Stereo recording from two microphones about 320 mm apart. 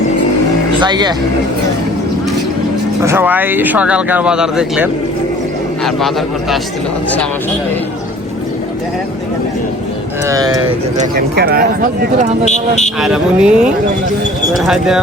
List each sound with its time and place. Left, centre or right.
0.8 s speech: centre
3.0 s speech: centre
10.2 s speech: centre
10.9 s speech: right
13.0 s speech: centre